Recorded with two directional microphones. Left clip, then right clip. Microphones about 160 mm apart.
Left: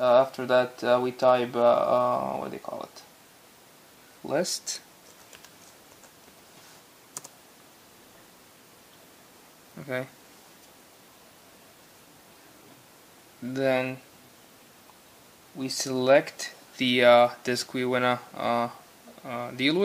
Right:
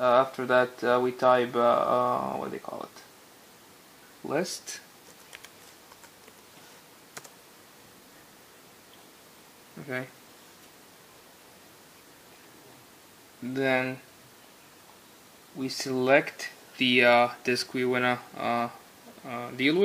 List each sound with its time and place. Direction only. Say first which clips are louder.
0.0 s speech: left 2 dB; 5° left (ahead or behind)
4.3 s speech: left 3 dB; 15° left (ahead or behind)
9.8 s speech: left 1 dB; 15° left (ahead or behind)
13.5 s speech: left 1 dB; 15° left (ahead or behind)
15.6 s speech: left 2 dB; 10° left (ahead or behind)